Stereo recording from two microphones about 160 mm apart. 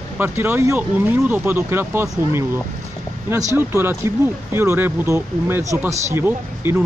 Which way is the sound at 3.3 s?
15° right (ahead or behind).